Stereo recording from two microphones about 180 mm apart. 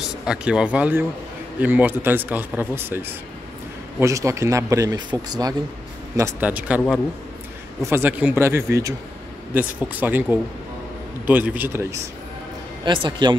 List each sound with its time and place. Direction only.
0.3 s a man's voice: 5° right (ahead or behind)
6.1 s a man's voice: 10° right (ahead or behind)
7.8 s a man's voice: 10° right (ahead or behind)
11.2 s a man's voice: 10° right (ahead or behind)
12.8 s speech: 25° right (ahead or behind)